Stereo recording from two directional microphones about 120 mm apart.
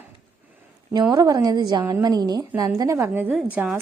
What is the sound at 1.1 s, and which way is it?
A woman's voice, 30° right (ahead or behind).